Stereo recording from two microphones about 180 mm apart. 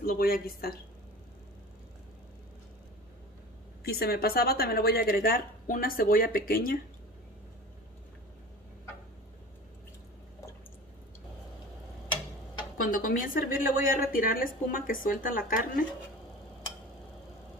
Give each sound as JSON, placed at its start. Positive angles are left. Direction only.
{"t": 0.0, "sound": "speech", "side_deg": 55}
{"t": 3.8, "sound": "speech", "side_deg": 60}
{"t": 12.8, "sound": "a woman's voice", "side_deg": 50}